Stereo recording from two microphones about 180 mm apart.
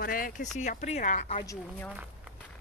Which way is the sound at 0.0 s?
50° left (ahead or behind).